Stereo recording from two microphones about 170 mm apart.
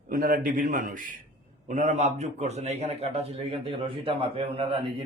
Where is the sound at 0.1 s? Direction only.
55° right (ahead or behind).